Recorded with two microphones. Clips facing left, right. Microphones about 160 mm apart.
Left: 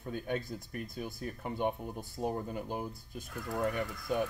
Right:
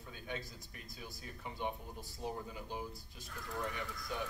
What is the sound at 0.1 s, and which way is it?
Speech, 55° left (ahead or behind).